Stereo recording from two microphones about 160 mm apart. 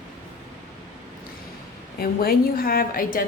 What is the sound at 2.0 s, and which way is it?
A woman's voice, 75° left (ahead or behind).